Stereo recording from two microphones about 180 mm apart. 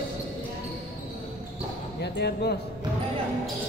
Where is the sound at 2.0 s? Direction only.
65° left (ahead or behind).